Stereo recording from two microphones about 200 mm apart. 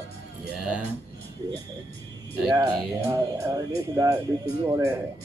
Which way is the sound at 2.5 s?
20° right (ahead or behind).